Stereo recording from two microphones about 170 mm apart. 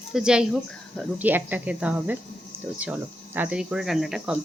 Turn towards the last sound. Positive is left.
turn(degrees=0)  # may be behind; listen again after turning